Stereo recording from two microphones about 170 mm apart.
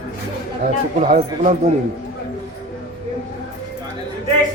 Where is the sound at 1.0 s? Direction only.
45° right (ahead or behind).